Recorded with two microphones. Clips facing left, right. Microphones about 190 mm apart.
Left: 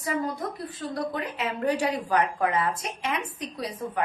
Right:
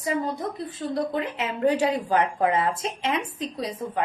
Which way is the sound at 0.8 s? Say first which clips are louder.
Right 4 dB; 25° right (ahead or behind).